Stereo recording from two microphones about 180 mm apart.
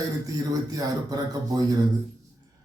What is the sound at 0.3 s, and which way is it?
A man's voice, 20° right (ahead or behind).